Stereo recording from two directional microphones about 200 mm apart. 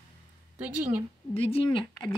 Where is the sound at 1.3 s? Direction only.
30° left (ahead or behind).